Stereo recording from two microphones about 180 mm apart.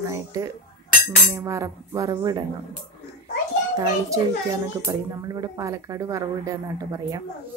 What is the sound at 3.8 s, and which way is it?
A child's voice, 20° right (ahead or behind).